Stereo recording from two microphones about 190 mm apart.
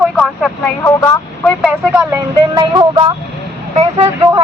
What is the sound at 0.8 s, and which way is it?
Speech, 10° left (ahead or behind).